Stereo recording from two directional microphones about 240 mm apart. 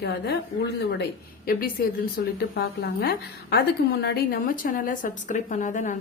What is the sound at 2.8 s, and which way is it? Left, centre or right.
A woman's voice, left.